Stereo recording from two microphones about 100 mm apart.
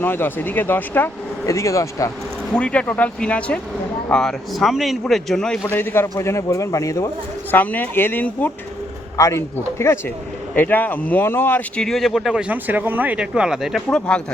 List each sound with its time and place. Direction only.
0.0 s speech: 20° left (ahead or behind)
1.5 s speech: 30° left (ahead or behind)
2.5 s speech: 10° left (ahead or behind)
5.6 s speech: 20° left (ahead or behind)
7.5 s speech: 15° left (ahead or behind)
9.1 s speech: 30° left (ahead or behind)
10.5 s speech: 20° left (ahead or behind)
11.8 s speech: centre (ahead or behind)
13.9 s speech: 10° left (ahead or behind)